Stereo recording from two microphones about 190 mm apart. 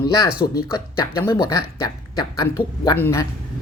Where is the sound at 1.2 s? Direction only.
15° left (ahead or behind).